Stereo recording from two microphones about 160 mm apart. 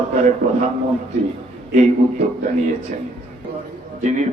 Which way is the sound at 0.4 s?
45° right (ahead or behind).